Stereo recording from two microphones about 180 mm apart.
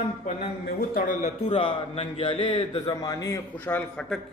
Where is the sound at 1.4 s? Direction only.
30° left (ahead or behind).